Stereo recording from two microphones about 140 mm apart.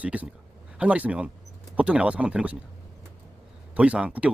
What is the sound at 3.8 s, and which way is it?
Speech, 10° right (ahead or behind).